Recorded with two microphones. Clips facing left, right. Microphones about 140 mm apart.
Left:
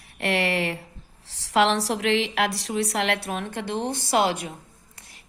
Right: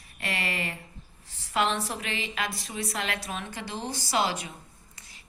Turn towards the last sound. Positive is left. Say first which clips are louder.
# left 2 dB
turn(degrees=60)  # may be behind; listen again after turning